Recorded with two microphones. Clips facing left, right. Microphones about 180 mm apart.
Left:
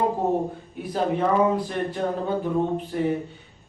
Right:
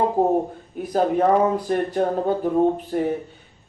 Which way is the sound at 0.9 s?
45° right (ahead or behind).